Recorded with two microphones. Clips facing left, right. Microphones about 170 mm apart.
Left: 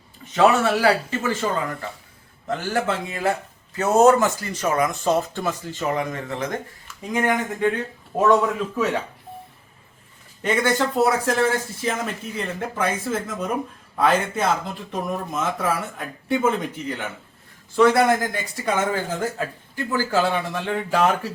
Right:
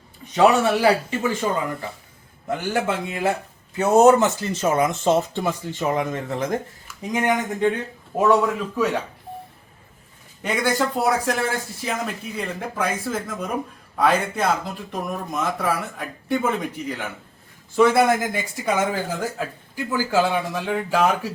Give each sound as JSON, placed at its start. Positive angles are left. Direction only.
{"t": 0.3, "sound": "speech", "side_deg": -15}
{"t": 8.1, "sound": "speech", "side_deg": -5}
{"t": 10.4, "sound": "speech", "side_deg": -5}
{"t": 11.9, "sound": "speech", "side_deg": 0}
{"t": 19.9, "sound": "speech", "side_deg": -15}